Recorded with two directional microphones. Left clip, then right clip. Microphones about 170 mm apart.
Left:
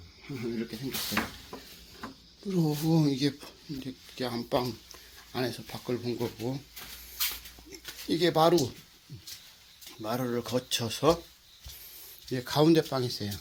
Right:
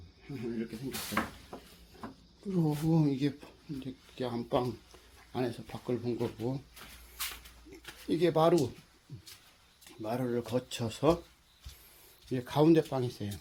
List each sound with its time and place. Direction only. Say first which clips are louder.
0.3 s speech: left 3 dB; 20° left (ahead or behind)
2.6 s speech: left 3 dB; centre (ahead or behind)
10.0 s speech: left 2 dB; centre (ahead or behind)
12.3 s speech: left 2 dB; centre (ahead or behind)